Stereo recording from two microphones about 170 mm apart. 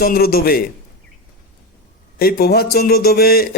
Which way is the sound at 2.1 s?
65° left (ahead or behind).